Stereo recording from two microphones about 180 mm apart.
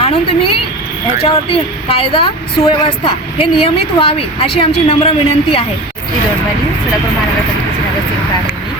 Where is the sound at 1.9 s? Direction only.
30° left (ahead or behind).